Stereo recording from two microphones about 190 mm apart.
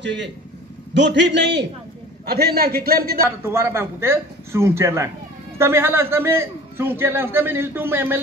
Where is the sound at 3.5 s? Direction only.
15° right (ahead or behind).